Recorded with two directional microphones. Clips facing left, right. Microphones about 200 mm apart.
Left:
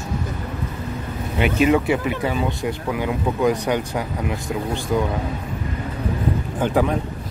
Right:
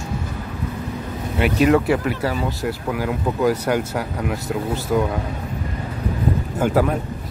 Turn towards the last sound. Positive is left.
turn(degrees=-5)  # may be behind; listen again after turning